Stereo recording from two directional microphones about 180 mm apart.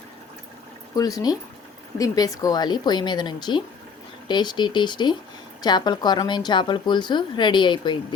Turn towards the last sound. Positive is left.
turn(degrees=25)  # may be behind; listen again after turning